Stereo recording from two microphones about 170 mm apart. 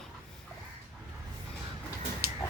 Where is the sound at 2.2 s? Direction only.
60° right (ahead or behind).